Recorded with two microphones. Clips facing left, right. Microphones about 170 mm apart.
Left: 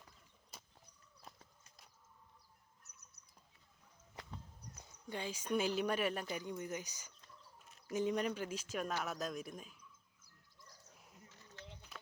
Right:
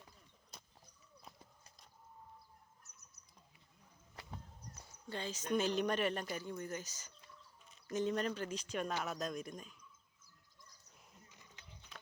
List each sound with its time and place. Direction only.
4.8 s speech: 15° left (ahead or behind)
11.3 s a sound: 15° right (ahead or behind)
11.9 s clip-clop: 5° left (ahead or behind)